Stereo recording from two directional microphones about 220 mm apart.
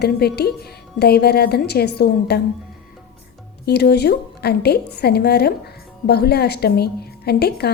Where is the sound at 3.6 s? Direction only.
50° left (ahead or behind).